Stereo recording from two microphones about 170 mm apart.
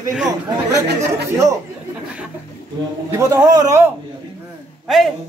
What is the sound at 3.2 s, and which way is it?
Speech, 20° right (ahead or behind).